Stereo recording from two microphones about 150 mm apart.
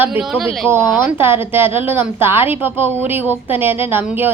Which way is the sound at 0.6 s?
15° right (ahead or behind).